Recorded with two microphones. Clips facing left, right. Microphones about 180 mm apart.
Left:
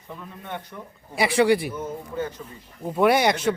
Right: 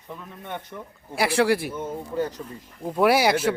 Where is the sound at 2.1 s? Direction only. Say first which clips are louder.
Right 3 dB; 40° right (ahead or behind).